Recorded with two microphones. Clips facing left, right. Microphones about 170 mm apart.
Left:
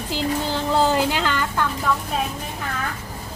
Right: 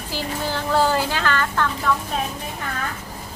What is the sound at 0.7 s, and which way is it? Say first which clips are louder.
Speech: left 1 dB; 20° left (ahead or behind).